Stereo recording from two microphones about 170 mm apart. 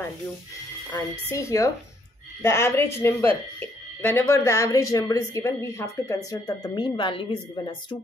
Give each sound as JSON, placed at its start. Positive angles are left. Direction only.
{"t": 0.9, "sound": "speech", "side_deg": 15}